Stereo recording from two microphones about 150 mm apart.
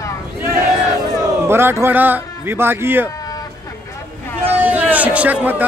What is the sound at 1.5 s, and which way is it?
Speech, 15° right (ahead or behind).